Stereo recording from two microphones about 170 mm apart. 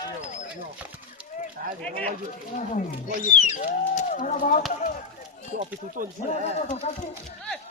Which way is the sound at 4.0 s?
50° left (ahead or behind).